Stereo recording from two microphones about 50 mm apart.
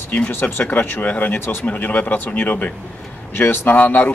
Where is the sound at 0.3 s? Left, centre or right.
Left.